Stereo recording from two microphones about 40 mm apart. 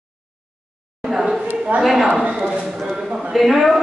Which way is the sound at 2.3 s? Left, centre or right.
Right.